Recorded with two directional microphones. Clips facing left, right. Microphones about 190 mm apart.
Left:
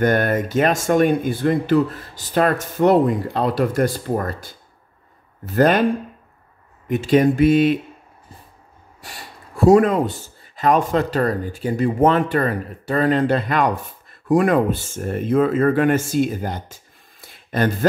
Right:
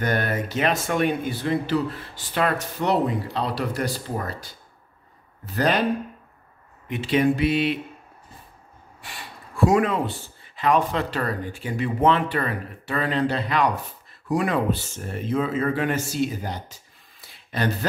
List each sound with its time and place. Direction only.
0.0 s speech: 50° left (ahead or behind)
6.9 s speech: 45° left (ahead or behind)
9.0 s speech: 40° left (ahead or behind)
17.2 s a sound: 50° left (ahead or behind)